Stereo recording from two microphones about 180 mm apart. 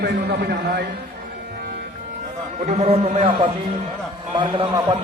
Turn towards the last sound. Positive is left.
turn(degrees=-25)  # may be behind; listen again after turning